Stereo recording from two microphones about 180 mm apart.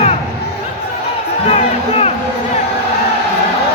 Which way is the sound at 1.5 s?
35° left (ahead or behind).